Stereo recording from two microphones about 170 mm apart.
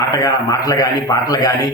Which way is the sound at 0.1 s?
20° left (ahead or behind).